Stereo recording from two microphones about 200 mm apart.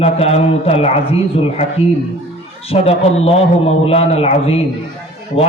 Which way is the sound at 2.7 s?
30° left (ahead or behind).